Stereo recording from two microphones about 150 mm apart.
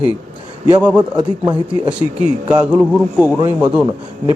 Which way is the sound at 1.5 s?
30° right (ahead or behind).